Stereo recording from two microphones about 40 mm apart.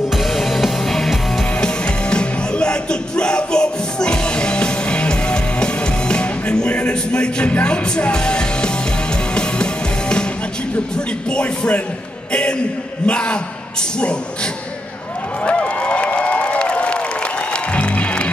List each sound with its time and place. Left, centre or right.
0.1 s music: centre
1.6 s music: left
7.6 s speech: left
8.1 s music: left
11.2 s speech: left
12.3 s a sound: left
13.0 s speech: left
15.4 s a sound: left